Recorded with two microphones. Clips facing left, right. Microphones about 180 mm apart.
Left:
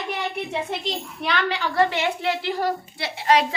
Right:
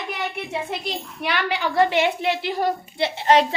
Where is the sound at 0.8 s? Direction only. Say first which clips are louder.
Even; 10° right (ahead or behind).